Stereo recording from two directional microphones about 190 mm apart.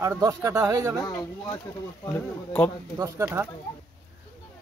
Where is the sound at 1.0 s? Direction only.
20° left (ahead or behind).